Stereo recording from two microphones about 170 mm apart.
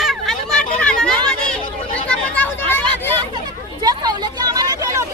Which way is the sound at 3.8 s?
20° right (ahead or behind).